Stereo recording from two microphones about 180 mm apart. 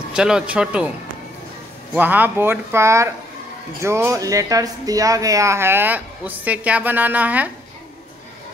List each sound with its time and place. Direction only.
0.1 s speech: 5° right (ahead or behind)
2.0 s speech: 10° right (ahead or behind)